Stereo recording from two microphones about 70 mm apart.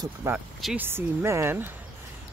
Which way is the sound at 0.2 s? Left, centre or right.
Right.